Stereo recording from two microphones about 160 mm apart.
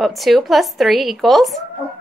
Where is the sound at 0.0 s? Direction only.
Centre (ahead or behind).